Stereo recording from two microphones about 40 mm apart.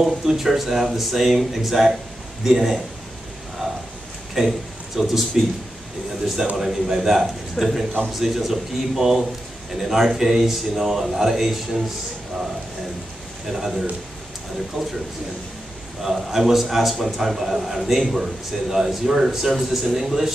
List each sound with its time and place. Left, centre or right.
0.3 s a man's voice: centre
4.4 s speech: centre
6.5 s a man's voice: centre
13.5 s a man's voice: centre
16.0 s a man's voice: centre